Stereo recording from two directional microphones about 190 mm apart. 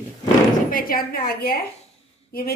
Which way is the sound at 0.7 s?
50° left (ahead or behind).